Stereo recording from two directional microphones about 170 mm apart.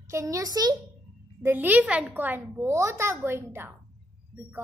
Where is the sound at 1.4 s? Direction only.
10° right (ahead or behind).